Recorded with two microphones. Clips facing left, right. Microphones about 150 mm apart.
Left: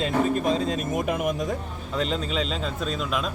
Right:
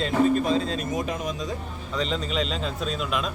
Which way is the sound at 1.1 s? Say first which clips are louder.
Left 4 dB; 60° left (ahead or behind).